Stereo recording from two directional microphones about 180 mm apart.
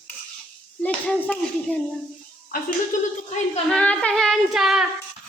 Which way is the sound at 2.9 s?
45° left (ahead or behind).